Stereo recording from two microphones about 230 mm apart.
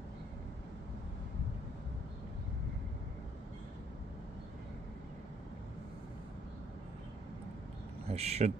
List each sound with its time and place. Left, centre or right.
8.1 s speech: right